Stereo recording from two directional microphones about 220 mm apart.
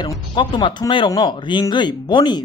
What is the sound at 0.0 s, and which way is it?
Speech, 20° left (ahead or behind).